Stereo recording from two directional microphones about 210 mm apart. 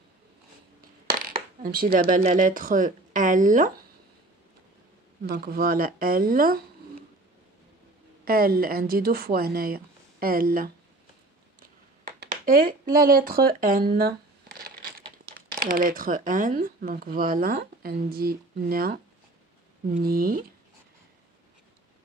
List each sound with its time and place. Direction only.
1.2 s speech: 45° right (ahead or behind)
5.2 s speech: 45° right (ahead or behind)
8.3 s speech: 45° right (ahead or behind)
12.2 s speech: 45° right (ahead or behind)
20.0 s speech: 45° right (ahead or behind)